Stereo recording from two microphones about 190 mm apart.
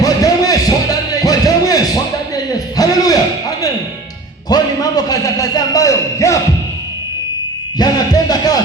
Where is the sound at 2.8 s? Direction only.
20° left (ahead or behind).